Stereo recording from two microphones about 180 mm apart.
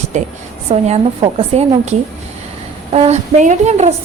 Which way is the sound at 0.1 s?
40° right (ahead or behind).